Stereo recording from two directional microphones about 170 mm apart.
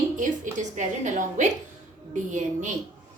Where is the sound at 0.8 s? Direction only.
45° right (ahead or behind).